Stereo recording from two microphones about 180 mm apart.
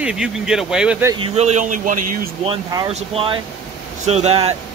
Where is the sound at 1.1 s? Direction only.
35° right (ahead or behind).